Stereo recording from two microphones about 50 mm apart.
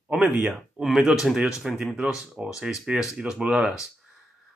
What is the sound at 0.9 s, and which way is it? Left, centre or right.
Speech, centre.